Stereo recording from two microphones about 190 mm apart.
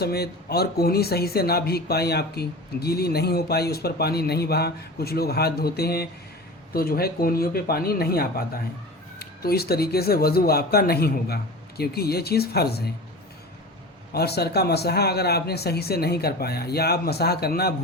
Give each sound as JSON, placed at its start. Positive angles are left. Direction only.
{"t": 0.0, "sound": "speech", "side_deg": 55}
{"t": 14.1, "sound": "speech", "side_deg": 55}